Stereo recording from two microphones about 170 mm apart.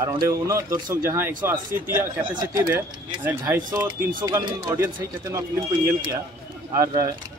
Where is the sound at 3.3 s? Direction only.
15° right (ahead or behind).